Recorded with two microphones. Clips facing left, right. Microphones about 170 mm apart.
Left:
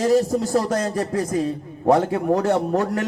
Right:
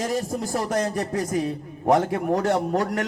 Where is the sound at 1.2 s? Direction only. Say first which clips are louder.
Left 3 dB; 20° right (ahead or behind).